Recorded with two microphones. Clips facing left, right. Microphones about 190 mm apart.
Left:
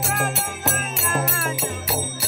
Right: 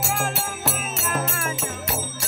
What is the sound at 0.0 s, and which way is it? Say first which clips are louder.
Music: left 1 dB; centre (ahead or behind).